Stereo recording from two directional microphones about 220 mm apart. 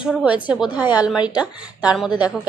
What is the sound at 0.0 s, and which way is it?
Speech, 5° right (ahead or behind).